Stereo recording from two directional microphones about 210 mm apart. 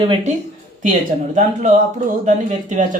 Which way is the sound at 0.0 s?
25° right (ahead or behind).